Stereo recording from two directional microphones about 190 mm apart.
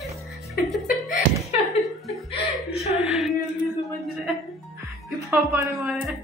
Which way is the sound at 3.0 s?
Centre (ahead or behind).